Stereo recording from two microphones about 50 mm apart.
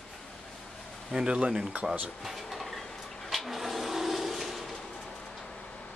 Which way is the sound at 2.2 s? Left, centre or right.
Centre.